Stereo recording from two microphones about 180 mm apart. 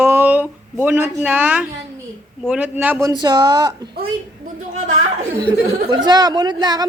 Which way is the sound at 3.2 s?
25° right (ahead or behind).